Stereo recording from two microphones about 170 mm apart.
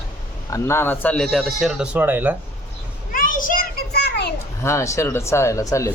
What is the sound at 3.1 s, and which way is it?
A child's voice, 55° left (ahead or behind).